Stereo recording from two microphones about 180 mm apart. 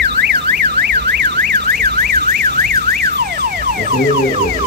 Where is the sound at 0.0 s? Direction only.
70° right (ahead or behind).